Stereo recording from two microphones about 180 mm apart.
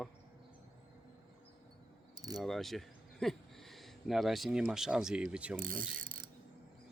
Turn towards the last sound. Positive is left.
turn(degrees=-50)  # may be behind; listen again after turning